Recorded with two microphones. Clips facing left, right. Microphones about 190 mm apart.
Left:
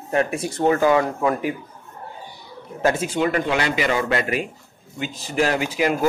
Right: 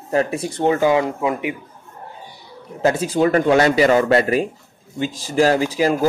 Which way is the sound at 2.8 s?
35° right (ahead or behind).